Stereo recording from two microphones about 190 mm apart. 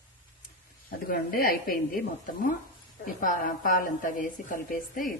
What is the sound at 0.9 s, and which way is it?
A woman's voice, 50° left (ahead or behind).